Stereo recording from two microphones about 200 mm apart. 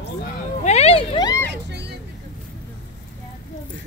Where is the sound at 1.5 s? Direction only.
55° right (ahead or behind).